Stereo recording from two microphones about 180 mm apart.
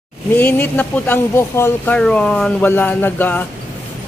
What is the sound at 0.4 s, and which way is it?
Speech, 10° left (ahead or behind).